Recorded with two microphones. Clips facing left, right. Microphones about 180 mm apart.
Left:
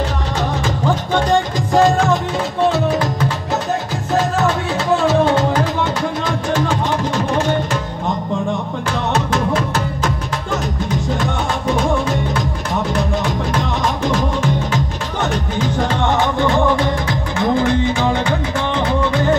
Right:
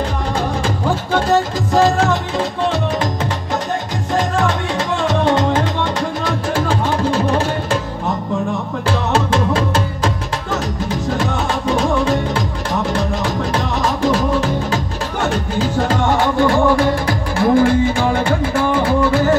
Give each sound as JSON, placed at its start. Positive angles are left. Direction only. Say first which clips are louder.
{"t": 1.1, "sound": "music", "louder": "right 2 dB", "side_deg": -5}
{"t": 9.1, "sound": "music", "louder": "right 1 dB", "side_deg": -30}
{"t": 16.8, "sound": "music", "louder": "right 2 dB", "side_deg": -10}